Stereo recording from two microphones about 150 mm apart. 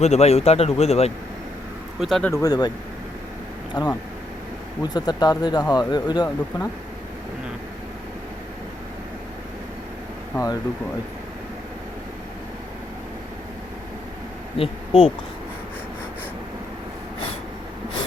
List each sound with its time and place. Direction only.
0.0 s speech: 45° left (ahead or behind)
2.0 s speech: centre (ahead or behind)
2.3 s speech: 25° left (ahead or behind)
3.8 s speech: 30° left (ahead or behind)
10.3 s speech: 25° left (ahead or behind)
14.6 s speech: 40° left (ahead or behind)